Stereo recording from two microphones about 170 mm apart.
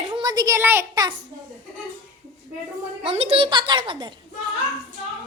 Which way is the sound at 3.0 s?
35° right (ahead or behind).